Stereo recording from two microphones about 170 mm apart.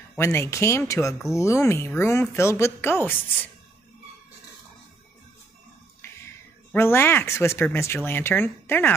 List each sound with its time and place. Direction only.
0.2 s speech: 15° left (ahead or behind)
6.7 s speech: 15° left (ahead or behind)